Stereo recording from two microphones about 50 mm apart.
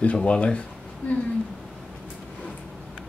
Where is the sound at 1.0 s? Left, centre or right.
Left.